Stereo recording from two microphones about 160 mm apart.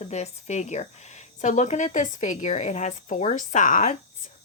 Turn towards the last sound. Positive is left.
turn(degrees=55)  # may be behind; listen again after turning